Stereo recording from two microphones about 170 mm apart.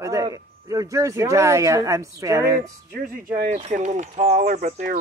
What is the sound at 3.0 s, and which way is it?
Speech, 55° right (ahead or behind).